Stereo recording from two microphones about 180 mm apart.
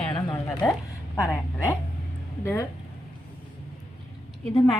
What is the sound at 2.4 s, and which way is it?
Speech, 15° left (ahead or behind).